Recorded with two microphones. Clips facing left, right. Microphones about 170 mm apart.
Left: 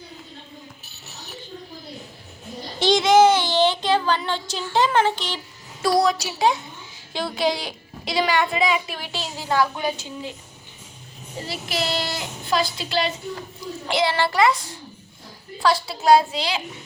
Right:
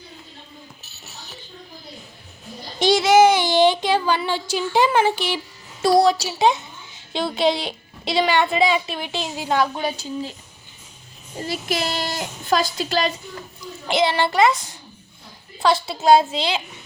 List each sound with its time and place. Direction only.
2.7 s speech: 10° right (ahead or behind)
5.8 s a woman's voice: 30° right (ahead or behind)
11.4 s a woman's voice: 45° right (ahead or behind)
13.8 s a woman's voice: 20° right (ahead or behind)